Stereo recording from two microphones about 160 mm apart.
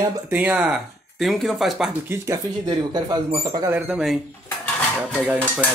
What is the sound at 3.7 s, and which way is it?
Speech, 10° right (ahead or behind).